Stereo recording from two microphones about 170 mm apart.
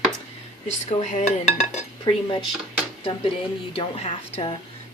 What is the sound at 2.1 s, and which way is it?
Speech, 25° left (ahead or behind).